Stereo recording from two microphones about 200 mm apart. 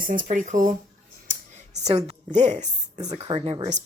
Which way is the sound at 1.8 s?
25° right (ahead or behind).